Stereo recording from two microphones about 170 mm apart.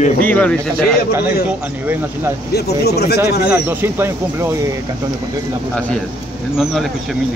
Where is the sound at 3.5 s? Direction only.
10° right (ahead or behind).